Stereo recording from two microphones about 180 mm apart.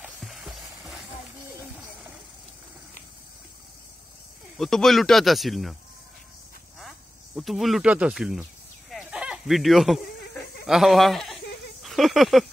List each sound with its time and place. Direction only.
0.0 s music: centre (ahead or behind)
4.6 s speech: centre (ahead or behind)
6.8 s speech: centre (ahead or behind)
8.9 s a sound: 5° right (ahead or behind)
10.7 s speech: centre (ahead or behind)
11.8 s a sound: centre (ahead or behind)